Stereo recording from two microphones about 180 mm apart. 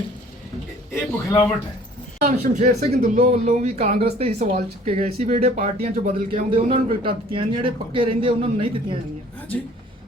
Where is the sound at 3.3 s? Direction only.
40° right (ahead or behind).